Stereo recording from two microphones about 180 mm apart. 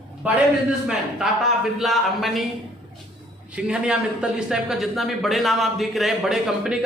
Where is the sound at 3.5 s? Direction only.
5° right (ahead or behind).